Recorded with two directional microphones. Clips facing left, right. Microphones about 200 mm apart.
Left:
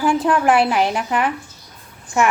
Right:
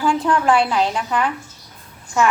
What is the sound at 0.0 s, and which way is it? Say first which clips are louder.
A woman's voice: left 1 dB; 20° left (ahead or behind).